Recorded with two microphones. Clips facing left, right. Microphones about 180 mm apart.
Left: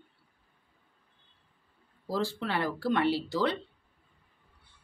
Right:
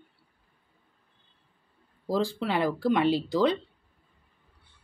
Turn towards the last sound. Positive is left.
turn(degrees=-15)  # may be behind; listen again after turning